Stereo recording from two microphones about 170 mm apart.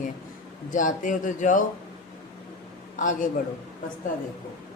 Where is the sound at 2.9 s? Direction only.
50° left (ahead or behind).